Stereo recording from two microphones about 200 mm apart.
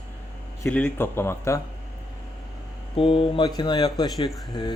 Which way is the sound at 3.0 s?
25° left (ahead or behind).